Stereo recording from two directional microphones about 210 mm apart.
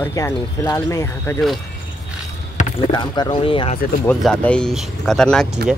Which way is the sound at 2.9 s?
20° left (ahead or behind).